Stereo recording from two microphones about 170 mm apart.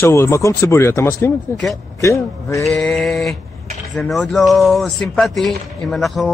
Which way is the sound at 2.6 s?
5° left (ahead or behind).